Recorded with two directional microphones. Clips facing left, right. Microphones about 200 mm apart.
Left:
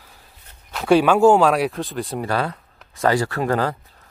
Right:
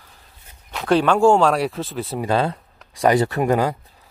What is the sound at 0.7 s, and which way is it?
Speech, 5° left (ahead or behind).